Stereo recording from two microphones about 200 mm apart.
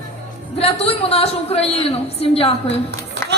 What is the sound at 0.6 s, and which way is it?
A woman's voice, 30° left (ahead or behind).